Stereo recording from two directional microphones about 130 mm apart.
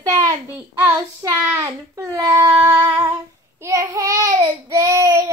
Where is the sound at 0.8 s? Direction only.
25° right (ahead or behind).